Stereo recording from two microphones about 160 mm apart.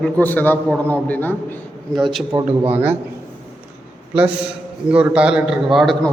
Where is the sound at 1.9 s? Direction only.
Centre (ahead or behind).